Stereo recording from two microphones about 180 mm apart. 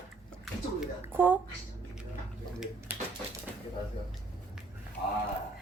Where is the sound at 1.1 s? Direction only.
10° right (ahead or behind).